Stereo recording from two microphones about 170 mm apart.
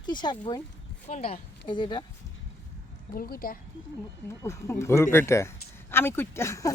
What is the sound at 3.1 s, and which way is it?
Speech, 60° left (ahead or behind).